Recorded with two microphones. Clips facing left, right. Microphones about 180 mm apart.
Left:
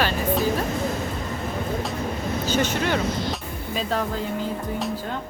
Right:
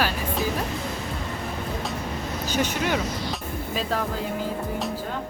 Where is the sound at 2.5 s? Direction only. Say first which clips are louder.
Left 1 dB; 10° right (ahead or behind).